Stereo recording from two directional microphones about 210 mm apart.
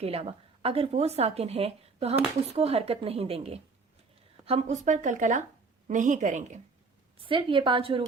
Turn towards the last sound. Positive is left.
turn(degrees=-25)  # may be behind; listen again after turning